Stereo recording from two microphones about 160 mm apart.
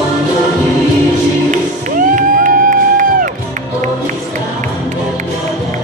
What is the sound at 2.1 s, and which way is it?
Music, 55° right (ahead or behind).